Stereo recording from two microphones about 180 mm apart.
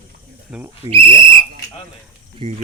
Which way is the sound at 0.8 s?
30° right (ahead or behind).